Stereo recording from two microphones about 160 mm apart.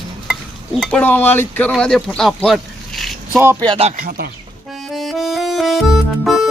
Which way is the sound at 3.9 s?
70° right (ahead or behind).